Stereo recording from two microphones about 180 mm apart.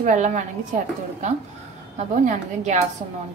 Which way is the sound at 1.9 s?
40° right (ahead or behind).